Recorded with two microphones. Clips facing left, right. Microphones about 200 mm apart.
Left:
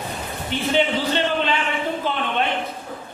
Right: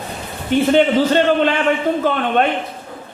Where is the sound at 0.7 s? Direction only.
50° right (ahead or behind).